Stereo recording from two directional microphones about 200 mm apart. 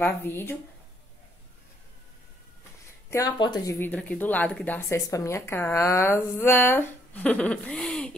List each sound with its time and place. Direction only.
0.0 s speech: 10° left (ahead or behind)
3.1 s speech: 20° left (ahead or behind)